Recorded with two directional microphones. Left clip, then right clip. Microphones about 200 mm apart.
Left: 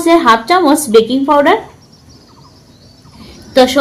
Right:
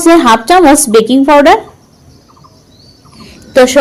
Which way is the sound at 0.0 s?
45° right (ahead or behind).